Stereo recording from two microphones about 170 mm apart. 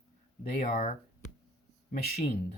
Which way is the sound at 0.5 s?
55° left (ahead or behind).